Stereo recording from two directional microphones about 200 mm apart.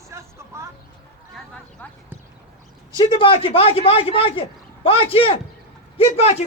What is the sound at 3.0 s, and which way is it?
A man's voice, 25° left (ahead or behind).